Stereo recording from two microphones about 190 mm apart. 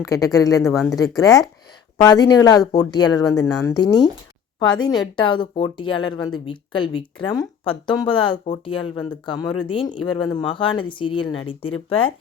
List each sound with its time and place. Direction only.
0.0 s speech: 15° left (ahead or behind)
0.6 s speech: centre (ahead or behind)
0.9 s speech: 20° left (ahead or behind)
5.1 s speech: 25° left (ahead or behind)